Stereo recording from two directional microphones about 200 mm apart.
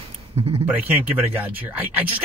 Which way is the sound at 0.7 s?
10° right (ahead or behind).